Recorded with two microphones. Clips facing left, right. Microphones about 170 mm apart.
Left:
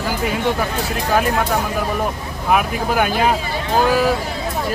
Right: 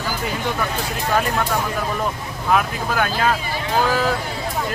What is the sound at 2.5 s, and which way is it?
Speech, 15° left (ahead or behind).